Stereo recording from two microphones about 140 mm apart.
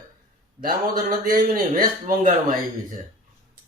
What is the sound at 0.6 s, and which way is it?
A man's voice, 90° right.